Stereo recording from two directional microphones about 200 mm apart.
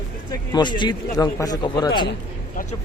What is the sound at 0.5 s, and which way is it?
Speech, 20° left (ahead or behind).